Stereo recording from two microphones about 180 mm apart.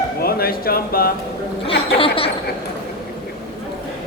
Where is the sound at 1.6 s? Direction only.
30° left (ahead or behind).